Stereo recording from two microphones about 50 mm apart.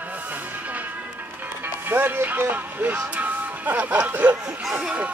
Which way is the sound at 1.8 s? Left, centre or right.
Right.